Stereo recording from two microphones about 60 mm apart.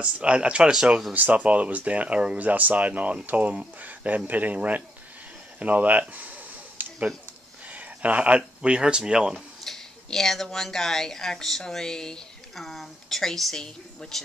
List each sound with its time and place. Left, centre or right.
0.0 s speech: centre
1.1 s speech: right
5.6 s a sound: right
7.6 s speech: right
9.7 s speech: centre